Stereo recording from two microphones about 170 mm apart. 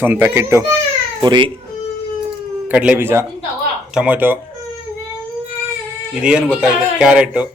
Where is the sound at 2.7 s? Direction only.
10° right (ahead or behind).